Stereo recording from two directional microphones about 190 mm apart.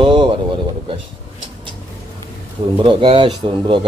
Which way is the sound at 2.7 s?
25° right (ahead or behind).